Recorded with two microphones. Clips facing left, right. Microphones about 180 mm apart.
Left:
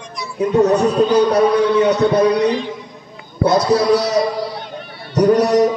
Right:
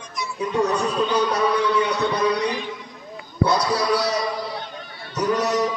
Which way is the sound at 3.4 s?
25° left (ahead or behind).